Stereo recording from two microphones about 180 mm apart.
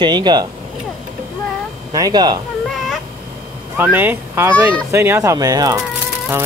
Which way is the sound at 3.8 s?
10° right (ahead or behind).